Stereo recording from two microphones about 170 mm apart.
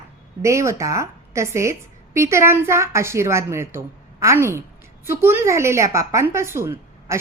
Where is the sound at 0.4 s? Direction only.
15° right (ahead or behind).